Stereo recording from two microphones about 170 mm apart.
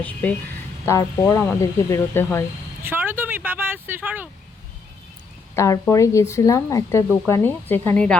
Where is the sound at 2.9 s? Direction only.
10° right (ahead or behind).